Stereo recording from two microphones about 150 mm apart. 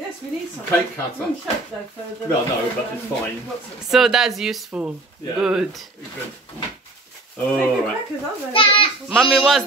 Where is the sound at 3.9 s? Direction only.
Centre (ahead or behind).